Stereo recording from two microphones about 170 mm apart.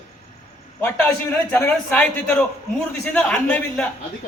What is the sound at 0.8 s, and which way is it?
A man's voice, 10° left (ahead or behind).